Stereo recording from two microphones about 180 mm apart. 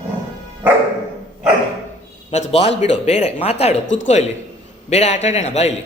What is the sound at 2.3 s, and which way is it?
Speech, 35° left (ahead or behind).